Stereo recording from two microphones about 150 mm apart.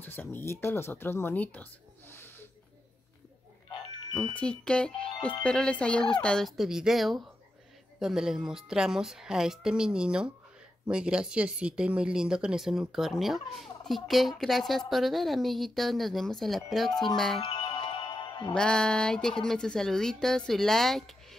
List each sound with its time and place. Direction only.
0.0 s speech: 15° left (ahead or behind)
4.1 s speech: 5° left (ahead or behind)
17.4 s music: 35° left (ahead or behind)
18.5 s speech: 5° left (ahead or behind)